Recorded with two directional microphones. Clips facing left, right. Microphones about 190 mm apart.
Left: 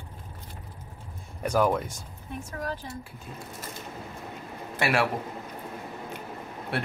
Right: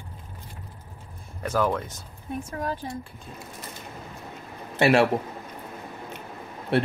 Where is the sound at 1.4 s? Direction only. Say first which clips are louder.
Left 1 dB; 15° left (ahead or behind).